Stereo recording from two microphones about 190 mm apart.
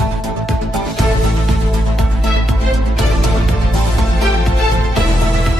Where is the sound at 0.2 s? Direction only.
Centre (ahead or behind).